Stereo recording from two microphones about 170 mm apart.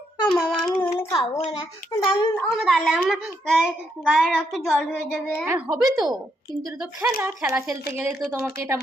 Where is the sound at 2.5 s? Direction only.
Centre (ahead or behind).